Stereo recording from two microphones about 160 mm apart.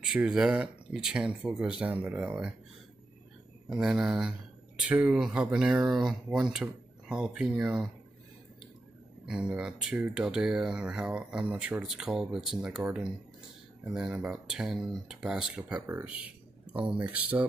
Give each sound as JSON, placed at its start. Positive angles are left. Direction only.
{"t": 0.0, "sound": "speech", "side_deg": -5}
{"t": 3.6, "sound": "speech", "side_deg": -5}
{"t": 9.3, "sound": "speech", "side_deg": -5}